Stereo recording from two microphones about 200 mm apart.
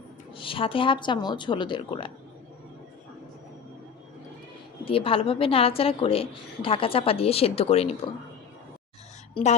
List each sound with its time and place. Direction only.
0.3 s a woman's voice: 25° left (ahead or behind)
4.9 s a woman's voice: 25° left (ahead or behind)
9.3 s a woman's voice: 35° left (ahead or behind)